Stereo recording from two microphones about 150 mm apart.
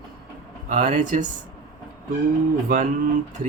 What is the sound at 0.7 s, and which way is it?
Speech, 60° right (ahead or behind).